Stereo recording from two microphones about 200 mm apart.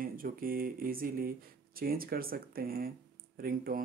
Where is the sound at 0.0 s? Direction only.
45° right (ahead or behind).